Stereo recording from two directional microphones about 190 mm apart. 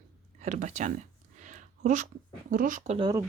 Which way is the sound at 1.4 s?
40° right (ahead or behind).